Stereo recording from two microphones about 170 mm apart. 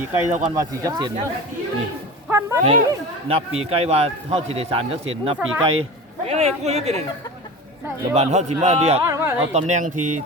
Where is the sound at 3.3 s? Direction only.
35° right (ahead or behind).